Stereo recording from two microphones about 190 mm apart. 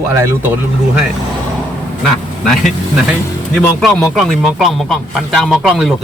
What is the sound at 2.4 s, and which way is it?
A man's voice, centre (ahead or behind).